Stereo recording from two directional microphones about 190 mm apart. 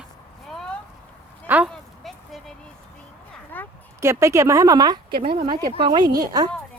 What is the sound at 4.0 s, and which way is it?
Speech, 15° right (ahead or behind).